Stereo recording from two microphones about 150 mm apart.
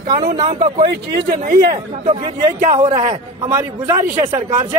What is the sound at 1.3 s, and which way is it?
Speech, 65° right (ahead or behind).